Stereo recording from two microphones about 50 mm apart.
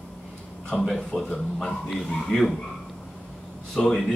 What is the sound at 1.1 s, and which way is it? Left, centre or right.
Speech, centre.